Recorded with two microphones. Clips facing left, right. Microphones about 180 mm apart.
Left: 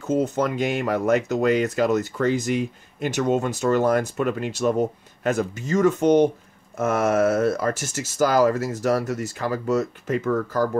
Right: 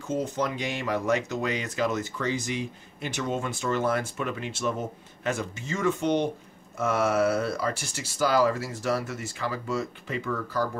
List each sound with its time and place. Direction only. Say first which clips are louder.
0.0 s speech: left 6 dB; 45° left (ahead or behind)